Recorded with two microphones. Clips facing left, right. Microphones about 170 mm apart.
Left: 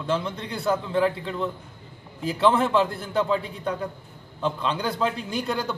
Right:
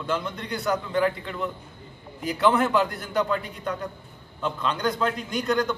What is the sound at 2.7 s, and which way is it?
A man's voice, 30° left (ahead or behind).